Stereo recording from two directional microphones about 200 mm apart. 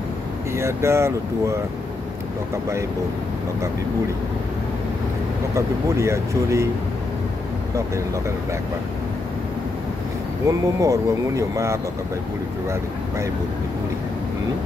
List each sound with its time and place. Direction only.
0.6 s speech: 15° right (ahead or behind)
5.5 s speech: 15° right (ahead or behind)
10.4 s speech: 15° right (ahead or behind)